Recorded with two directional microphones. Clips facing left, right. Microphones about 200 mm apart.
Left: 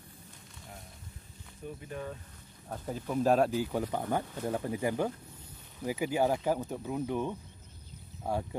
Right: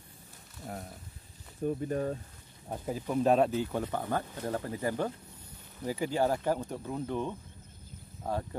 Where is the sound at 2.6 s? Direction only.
15° right (ahead or behind).